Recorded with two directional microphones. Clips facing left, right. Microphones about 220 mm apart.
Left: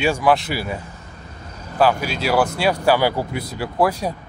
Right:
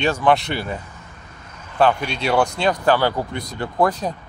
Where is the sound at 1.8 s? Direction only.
5° left (ahead or behind).